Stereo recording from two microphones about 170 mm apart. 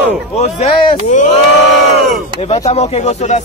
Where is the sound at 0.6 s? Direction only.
40° left (ahead or behind).